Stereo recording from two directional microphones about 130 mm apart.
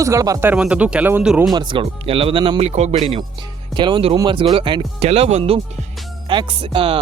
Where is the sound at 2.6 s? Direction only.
60° right (ahead or behind).